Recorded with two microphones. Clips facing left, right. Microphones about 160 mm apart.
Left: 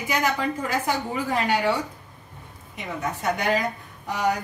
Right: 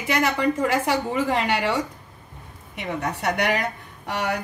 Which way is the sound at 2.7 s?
70° right (ahead or behind).